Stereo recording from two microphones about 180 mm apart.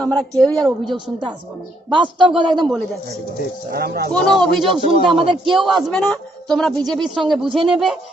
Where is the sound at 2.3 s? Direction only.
25° right (ahead or behind).